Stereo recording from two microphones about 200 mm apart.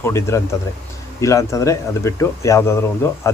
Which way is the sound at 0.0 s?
15° left (ahead or behind).